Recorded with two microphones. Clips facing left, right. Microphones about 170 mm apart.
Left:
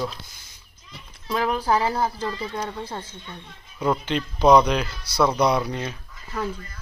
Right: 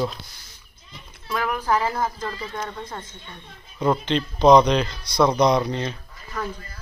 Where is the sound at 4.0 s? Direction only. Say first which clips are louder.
Right 2 dB; 10° left (ahead or behind).